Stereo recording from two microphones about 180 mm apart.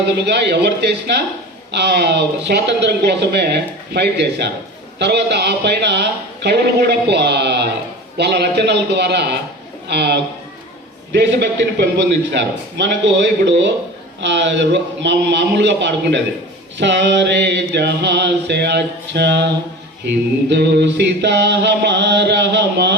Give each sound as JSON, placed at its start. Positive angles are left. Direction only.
{"t": 0.1, "sound": "mantra", "side_deg": -70}